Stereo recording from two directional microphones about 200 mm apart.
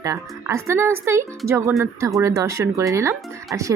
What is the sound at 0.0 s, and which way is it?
Speech, 15° right (ahead or behind).